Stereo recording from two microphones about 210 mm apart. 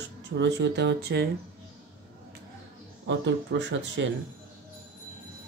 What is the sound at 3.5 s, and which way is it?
Speech, 60° right (ahead or behind).